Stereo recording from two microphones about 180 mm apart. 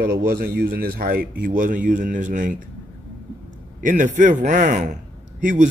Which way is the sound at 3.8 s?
45° right (ahead or behind).